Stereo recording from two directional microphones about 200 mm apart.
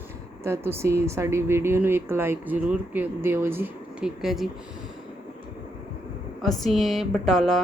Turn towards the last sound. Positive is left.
turn(degrees=0)  # may be behind; listen again after turning